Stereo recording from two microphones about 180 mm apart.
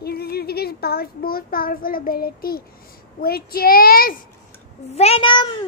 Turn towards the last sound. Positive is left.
turn(degrees=30)  # may be behind; listen again after turning